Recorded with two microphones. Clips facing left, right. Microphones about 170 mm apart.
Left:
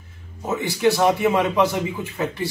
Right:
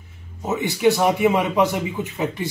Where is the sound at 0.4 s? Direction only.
20° right (ahead or behind).